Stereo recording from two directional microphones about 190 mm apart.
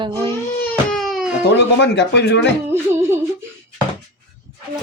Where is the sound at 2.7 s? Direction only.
15° right (ahead or behind).